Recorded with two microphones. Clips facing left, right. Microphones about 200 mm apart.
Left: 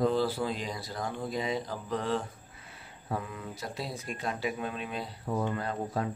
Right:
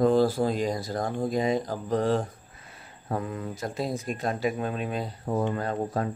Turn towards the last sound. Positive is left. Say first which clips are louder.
# right 4 dB
turn(degrees=-45)  # may be behind; listen again after turning